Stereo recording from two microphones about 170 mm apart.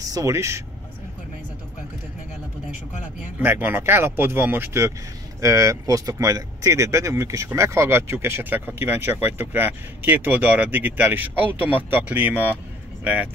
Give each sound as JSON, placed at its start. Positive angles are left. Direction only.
{"t": 0.0, "sound": "speech", "side_deg": -20}
{"t": 3.3, "sound": "speech", "side_deg": -10}